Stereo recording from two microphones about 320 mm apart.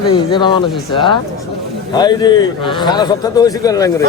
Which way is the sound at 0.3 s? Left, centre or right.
Centre.